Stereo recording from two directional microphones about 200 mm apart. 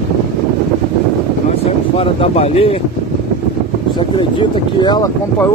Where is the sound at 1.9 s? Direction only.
30° left (ahead or behind).